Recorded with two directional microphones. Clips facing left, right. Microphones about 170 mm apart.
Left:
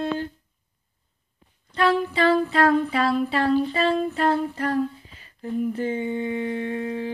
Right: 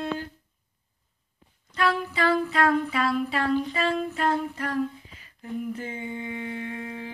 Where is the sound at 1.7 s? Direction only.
30° left (ahead or behind).